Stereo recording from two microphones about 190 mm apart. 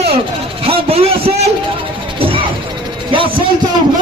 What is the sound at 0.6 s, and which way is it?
Vehicle, 30° right (ahead or behind).